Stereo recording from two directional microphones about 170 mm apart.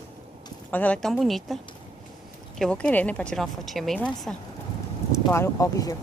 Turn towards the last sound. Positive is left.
turn(degrees=20)  # may be behind; listen again after turning